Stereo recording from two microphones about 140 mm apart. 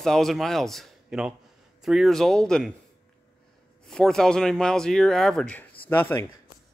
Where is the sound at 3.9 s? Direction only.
5° left (ahead or behind).